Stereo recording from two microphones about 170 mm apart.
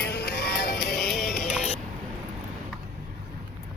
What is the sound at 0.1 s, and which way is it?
Music, 80° left.